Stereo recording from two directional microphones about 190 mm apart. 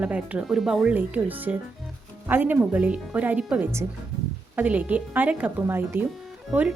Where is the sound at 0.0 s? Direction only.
5° right (ahead or behind).